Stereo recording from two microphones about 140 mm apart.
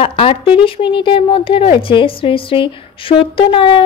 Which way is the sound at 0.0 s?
40° left (ahead or behind).